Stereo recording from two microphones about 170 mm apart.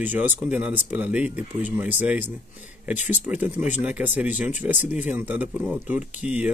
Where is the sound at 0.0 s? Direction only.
10° right (ahead or behind).